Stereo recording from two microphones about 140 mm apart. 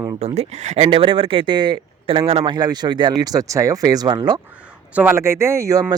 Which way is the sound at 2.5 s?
30° right (ahead or behind).